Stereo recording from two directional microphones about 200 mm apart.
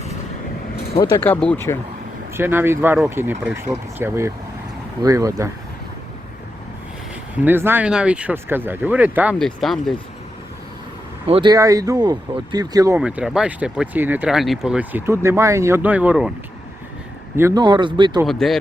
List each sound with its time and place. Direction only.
0.9 s speech: 20° left (ahead or behind)
2.3 s speech: 10° right (ahead or behind)
7.4 s speech: 10° right (ahead or behind)
11.3 s speech: 25° right (ahead or behind)
13.0 s speech: 5° right (ahead or behind)
17.3 s speech: 15° right (ahead or behind)
18.3 s speech: centre (ahead or behind)